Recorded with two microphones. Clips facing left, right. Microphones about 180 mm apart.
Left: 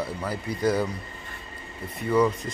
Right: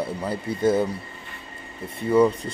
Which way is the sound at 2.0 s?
30° right (ahead or behind).